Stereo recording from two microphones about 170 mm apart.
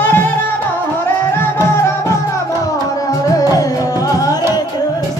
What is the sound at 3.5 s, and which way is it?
Music, 20° left (ahead or behind).